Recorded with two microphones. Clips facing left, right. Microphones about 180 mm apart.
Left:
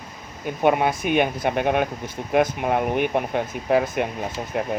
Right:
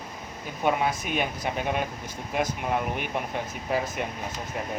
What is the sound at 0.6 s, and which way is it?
Speech, 60° left (ahead or behind).